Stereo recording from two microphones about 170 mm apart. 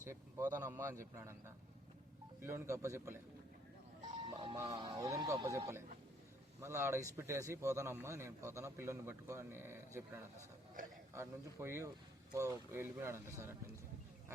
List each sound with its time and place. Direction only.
0.0 s a man's voice: 15° right (ahead or behind)
4.3 s a man's voice: 30° right (ahead or behind); by 10.0 s 15° right (ahead or behind)
11.1 s a man's voice: 15° right (ahead or behind)